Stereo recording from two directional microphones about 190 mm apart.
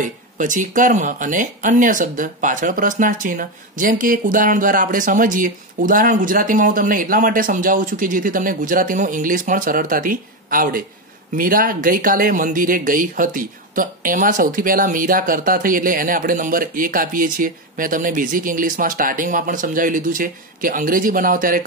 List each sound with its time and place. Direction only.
0.0 s speech: 45° right (ahead or behind)